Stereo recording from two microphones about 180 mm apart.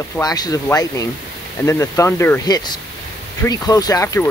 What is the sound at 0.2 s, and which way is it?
Speech, 20° left (ahead or behind).